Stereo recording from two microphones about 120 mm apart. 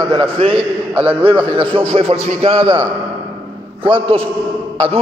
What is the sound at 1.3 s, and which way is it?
A man's voice, 45° right (ahead or behind).